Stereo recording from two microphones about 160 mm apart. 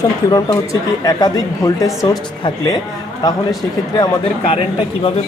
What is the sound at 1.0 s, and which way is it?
Speech, 25° left (ahead or behind).